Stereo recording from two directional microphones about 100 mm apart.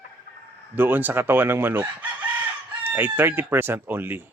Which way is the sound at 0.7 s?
20° right (ahead or behind).